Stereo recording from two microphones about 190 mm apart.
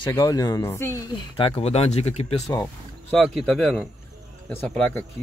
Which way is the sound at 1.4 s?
30° left (ahead or behind).